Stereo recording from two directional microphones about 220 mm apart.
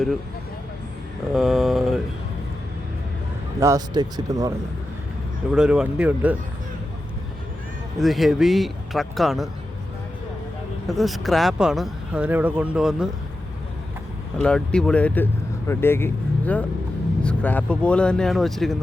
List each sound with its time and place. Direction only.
1.3 s speech: centre (ahead or behind)
3.6 s speech: 15° right (ahead or behind)
5.5 s speech: 5° right (ahead or behind)
7.9 s speech: centre (ahead or behind)
10.8 s speech: centre (ahead or behind)
14.3 s speech: 5° left (ahead or behind)